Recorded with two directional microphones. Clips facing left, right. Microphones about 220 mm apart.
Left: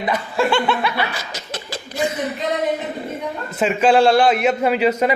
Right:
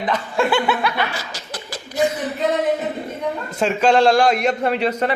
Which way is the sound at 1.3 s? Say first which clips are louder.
Left 2 dB; 25° left (ahead or behind).